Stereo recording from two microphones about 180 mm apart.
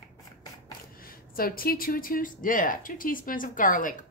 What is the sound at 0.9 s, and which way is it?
Speech, 55° left (ahead or behind).